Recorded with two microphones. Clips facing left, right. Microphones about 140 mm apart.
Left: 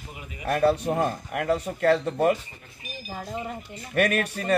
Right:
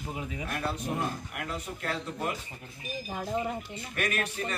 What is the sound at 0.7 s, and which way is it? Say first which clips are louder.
Speech: left 8 dB; 45° left (ahead or behind).